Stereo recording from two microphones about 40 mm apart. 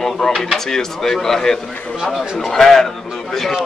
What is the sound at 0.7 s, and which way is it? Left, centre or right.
A man's voice, centre.